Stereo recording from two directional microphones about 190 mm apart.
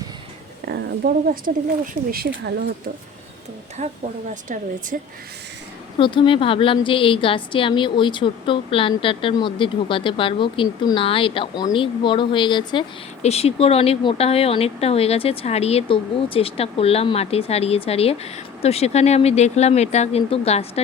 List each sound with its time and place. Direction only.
0.7 s speech: 50° right (ahead or behind)
3.8 s speech: 40° right (ahead or behind)
6.0 s a woman's voice: 25° left (ahead or behind)